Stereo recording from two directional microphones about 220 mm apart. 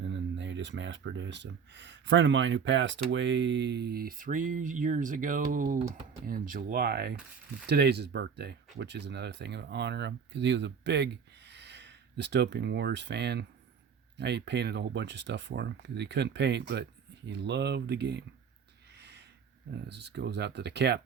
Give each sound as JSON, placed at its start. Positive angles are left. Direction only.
{"t": 0.0, "sound": "speech", "side_deg": -55}
{"t": 18.9, "sound": "a sound", "side_deg": -50}
{"t": 19.7, "sound": "speech", "side_deg": -50}